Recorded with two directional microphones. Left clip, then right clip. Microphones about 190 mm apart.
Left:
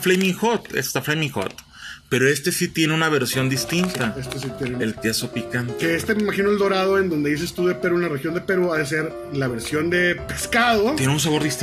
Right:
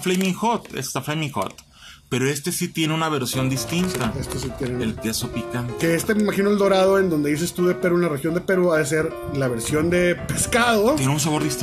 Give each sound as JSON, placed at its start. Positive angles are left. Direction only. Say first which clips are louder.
{"t": 0.0, "sound": "speech", "louder": "left 3 dB", "side_deg": 10}
{"t": 5.8, "sound": "speech", "louder": "right 1 dB", "side_deg": -45}
{"t": 11.0, "sound": "speech", "louder": "left 2 dB", "side_deg": 0}